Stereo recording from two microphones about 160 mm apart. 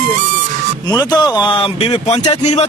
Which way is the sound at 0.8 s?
20° left (ahead or behind).